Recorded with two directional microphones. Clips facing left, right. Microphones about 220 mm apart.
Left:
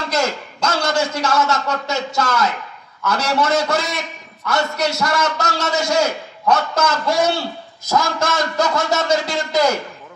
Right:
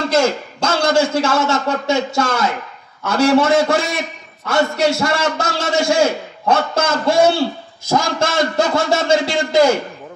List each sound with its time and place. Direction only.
0.1 s a man's voice: 30° right (ahead or behind)